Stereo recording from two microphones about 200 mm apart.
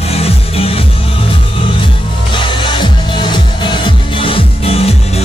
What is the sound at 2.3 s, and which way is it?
Music, 25° left (ahead or behind).